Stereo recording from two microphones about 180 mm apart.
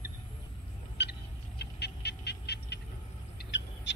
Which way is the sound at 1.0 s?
65° left (ahead or behind).